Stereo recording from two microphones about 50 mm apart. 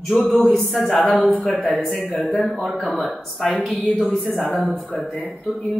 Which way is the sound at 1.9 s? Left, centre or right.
Left.